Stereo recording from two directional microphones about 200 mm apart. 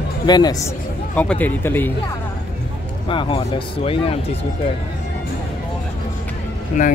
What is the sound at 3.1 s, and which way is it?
Speech, 25° left (ahead or behind).